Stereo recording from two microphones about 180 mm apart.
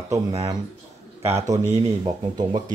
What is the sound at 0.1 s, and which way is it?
Speech, 20° right (ahead or behind).